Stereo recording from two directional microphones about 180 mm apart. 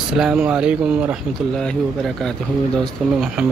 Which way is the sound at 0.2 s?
5° right (ahead or behind).